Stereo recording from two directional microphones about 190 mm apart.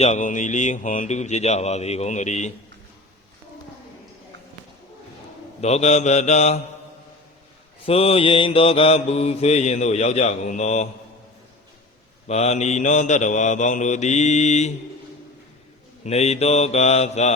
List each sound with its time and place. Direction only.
0.0 s mantra: 40° left (ahead or behind)
5.5 s mantra: 35° left (ahead or behind)
7.9 s mantra: 30° left (ahead or behind)
12.3 s mantra: 35° left (ahead or behind)
16.0 s mantra: 35° left (ahead or behind)